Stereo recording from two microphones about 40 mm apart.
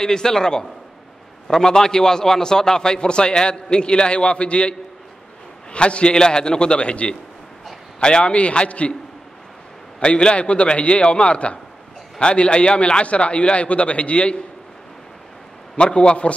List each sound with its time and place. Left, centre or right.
0.0 s a man's voice: centre
9.9 s a man's voice: left
15.7 s a man's voice: left